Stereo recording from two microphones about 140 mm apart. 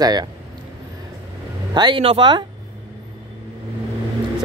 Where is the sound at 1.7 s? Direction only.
35° right (ahead or behind).